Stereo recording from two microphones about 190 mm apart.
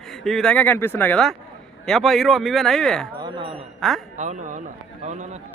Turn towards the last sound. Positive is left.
turn(degrees=-40)  # may be behind; listen again after turning